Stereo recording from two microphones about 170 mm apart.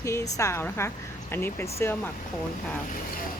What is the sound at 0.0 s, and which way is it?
Speech, 15° left (ahead or behind).